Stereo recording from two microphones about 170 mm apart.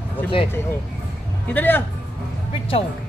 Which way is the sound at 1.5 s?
10° left (ahead or behind).